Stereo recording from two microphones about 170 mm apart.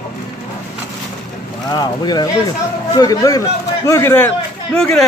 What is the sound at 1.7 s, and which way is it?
A man's voice, 25° left (ahead or behind).